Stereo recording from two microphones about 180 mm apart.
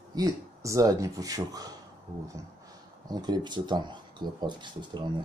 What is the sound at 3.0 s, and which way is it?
Speech, 20° right (ahead or behind).